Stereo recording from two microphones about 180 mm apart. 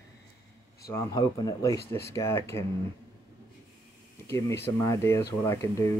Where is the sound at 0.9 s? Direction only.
20° left (ahead or behind).